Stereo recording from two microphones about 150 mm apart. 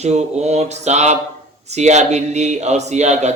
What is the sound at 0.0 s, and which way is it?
A man's voice, 50° right (ahead or behind).